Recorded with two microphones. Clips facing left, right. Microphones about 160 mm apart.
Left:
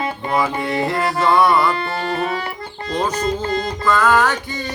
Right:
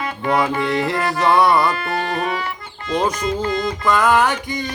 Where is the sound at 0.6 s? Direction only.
20° left (ahead or behind).